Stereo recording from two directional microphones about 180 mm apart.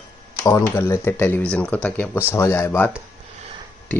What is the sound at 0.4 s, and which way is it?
Speech, 15° left (ahead or behind).